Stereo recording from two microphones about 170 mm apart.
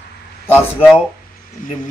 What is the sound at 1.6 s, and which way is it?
Speech, 50° left (ahead or behind).